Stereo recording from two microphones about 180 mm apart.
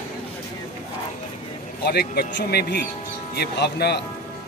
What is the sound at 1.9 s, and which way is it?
A man's voice, 65° left (ahead or behind).